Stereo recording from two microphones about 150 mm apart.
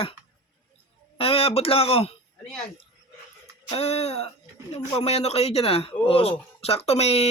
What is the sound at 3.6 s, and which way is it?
Speech, 45° left (ahead or behind).